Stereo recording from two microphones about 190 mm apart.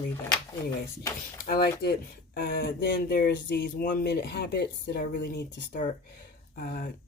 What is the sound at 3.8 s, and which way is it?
Speech, 45° left (ahead or behind).